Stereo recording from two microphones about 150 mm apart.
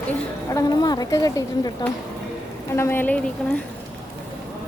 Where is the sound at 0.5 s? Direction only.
25° left (ahead or behind).